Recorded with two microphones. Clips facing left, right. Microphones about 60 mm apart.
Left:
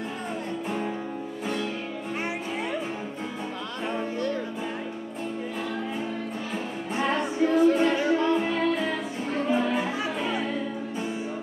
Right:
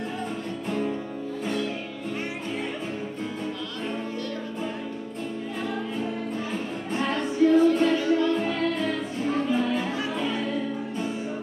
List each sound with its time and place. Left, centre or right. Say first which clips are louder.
0.7 s music: right 4 dB; centre
6.5 s music: right 1 dB; centre